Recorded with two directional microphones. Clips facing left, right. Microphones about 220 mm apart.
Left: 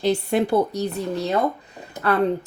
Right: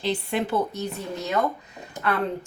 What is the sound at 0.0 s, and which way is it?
Speech, 40° left (ahead or behind).